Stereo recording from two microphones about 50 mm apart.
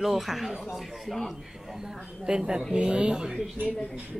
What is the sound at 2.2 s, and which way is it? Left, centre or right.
Speech, centre.